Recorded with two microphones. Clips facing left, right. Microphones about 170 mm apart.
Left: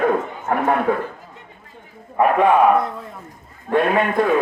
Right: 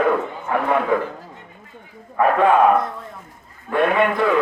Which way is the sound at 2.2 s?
20° left (ahead or behind).